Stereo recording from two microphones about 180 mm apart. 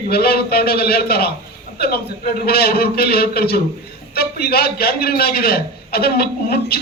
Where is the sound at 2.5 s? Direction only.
60° left (ahead or behind).